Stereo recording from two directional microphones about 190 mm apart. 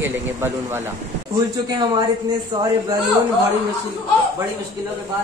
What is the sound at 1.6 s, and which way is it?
A man's voice, 25° right (ahead or behind).